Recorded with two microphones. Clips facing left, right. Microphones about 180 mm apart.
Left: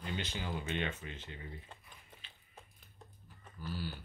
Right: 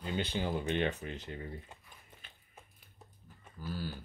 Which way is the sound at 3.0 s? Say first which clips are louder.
Left 1 dB; 5° right (ahead or behind).